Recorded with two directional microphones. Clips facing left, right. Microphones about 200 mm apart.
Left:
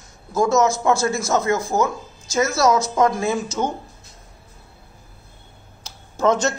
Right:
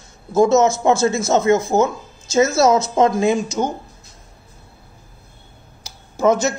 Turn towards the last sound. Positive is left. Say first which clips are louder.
# right 2 dB
turn(degrees=-10)  # may be behind; listen again after turning